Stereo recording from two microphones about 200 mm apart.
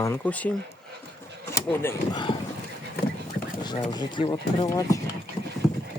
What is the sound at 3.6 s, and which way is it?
Speech, 20° left (ahead or behind).